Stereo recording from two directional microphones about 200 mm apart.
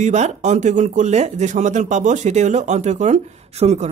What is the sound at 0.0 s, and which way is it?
Speech, 35° right (ahead or behind).